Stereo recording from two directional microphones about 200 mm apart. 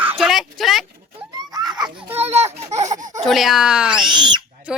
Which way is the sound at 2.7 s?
35° right (ahead or behind).